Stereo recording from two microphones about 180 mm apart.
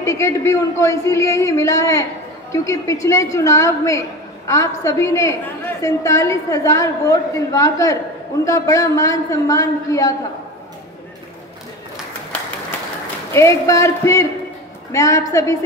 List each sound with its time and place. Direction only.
0.0 s a woman's voice: 15° left (ahead or behind)
13.3 s a woman's voice: 15° left (ahead or behind)